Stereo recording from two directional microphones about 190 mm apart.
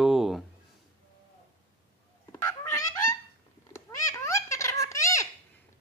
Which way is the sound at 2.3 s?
15° left (ahead or behind).